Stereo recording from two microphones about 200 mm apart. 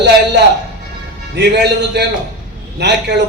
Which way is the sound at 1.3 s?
55° right (ahead or behind).